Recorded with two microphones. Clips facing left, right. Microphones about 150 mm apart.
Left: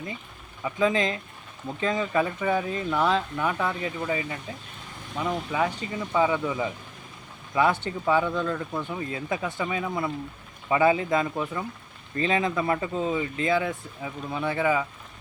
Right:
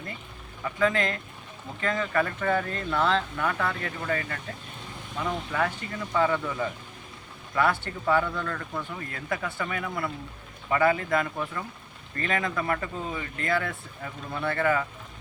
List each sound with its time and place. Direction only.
0.6 s speech: 15° left (ahead or behind)